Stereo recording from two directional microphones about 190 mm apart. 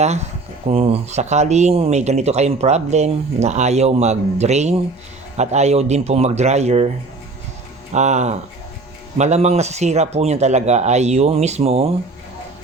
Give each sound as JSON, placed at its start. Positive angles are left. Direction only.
{"t": 0.0, "sound": "speech", "side_deg": -35}
{"t": 7.9, "sound": "speech", "side_deg": -35}